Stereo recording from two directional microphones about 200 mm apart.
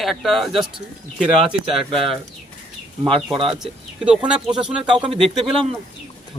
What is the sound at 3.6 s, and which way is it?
A man's voice, 5° right (ahead or behind).